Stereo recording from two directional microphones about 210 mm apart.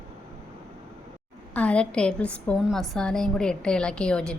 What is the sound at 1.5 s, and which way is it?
A woman's voice, 5° left (ahead or behind).